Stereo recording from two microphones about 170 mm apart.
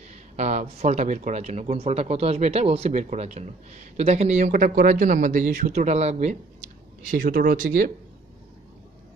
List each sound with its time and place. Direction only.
0.1 s speech: 40° right (ahead or behind)
7.1 s speech: 55° right (ahead or behind)